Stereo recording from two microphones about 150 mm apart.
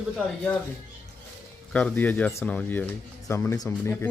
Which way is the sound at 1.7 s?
10° left (ahead or behind).